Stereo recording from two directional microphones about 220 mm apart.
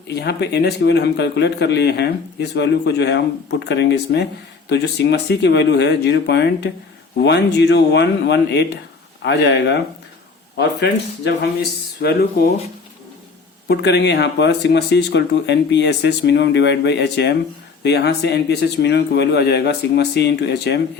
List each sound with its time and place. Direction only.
0.1 s a man's voice: 50° left (ahead or behind)
13.7 s a man's voice: 50° left (ahead or behind)